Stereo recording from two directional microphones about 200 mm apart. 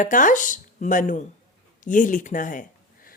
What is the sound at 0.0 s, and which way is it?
A woman's voice, 40° left (ahead or behind).